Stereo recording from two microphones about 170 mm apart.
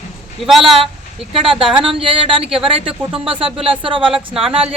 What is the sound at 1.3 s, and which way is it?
Speech, 30° right (ahead or behind).